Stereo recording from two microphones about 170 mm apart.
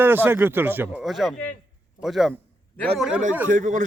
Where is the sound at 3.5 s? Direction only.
50° right (ahead or behind).